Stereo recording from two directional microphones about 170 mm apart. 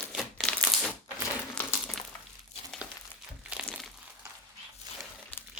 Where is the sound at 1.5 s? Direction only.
5° left (ahead or behind).